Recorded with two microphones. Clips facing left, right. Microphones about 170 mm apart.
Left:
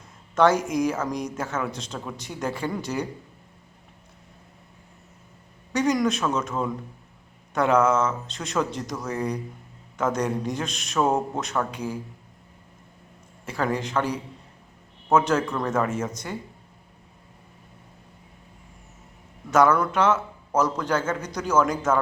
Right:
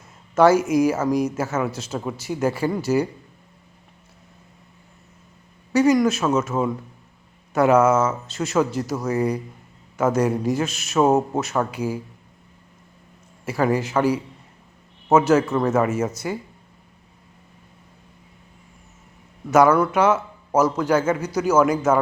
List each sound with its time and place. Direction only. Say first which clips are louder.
0.3 s speech: right 5 dB; 5° right (ahead or behind)
5.7 s a man's voice: right 6 dB; 5° right (ahead or behind)
13.4 s a man's voice: right 5 dB; 5° right (ahead or behind)
19.5 s a man's voice: right 4 dB; 10° right (ahead or behind)